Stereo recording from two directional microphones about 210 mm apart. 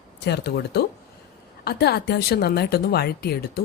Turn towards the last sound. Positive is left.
turn(degrees=50)  # may be behind; listen again after turning